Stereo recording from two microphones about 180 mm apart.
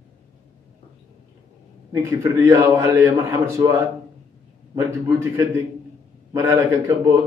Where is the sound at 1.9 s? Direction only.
15° right (ahead or behind).